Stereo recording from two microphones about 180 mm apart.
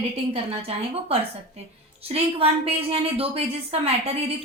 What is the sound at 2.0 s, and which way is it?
A woman's voice, 35° right (ahead or behind).